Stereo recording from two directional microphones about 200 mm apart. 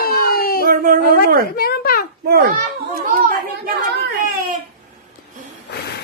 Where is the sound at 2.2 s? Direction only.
50° right (ahead or behind).